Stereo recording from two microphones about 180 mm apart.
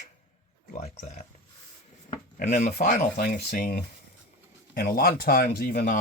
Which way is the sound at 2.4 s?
45° left (ahead or behind).